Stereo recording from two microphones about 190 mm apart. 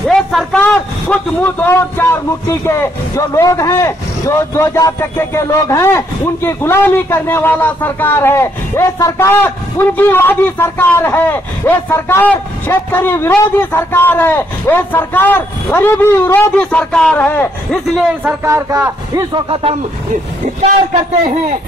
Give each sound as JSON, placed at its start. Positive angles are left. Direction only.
{"t": 0.0, "sound": "a man's voice", "side_deg": 0}
{"t": 18.2, "sound": "a man's voice", "side_deg": -15}